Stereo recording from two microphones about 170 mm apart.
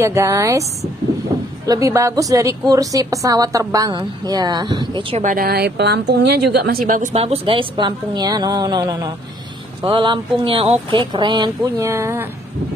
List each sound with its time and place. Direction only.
0.0 s speech: 15° right (ahead or behind)
1.7 s a woman's voice: 20° right (ahead or behind)
5.1 s a woman's voice: 50° right (ahead or behind); by 7.0 s 70° right (ahead or behind)
7.0 s a woman's voice: 40° right (ahead or behind)
11.6 s speech: 15° right (ahead or behind)